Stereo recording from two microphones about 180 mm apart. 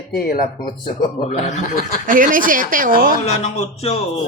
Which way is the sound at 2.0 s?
50° right (ahead or behind).